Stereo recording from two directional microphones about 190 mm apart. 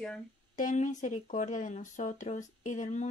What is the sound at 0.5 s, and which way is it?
Speech, 45° left (ahead or behind).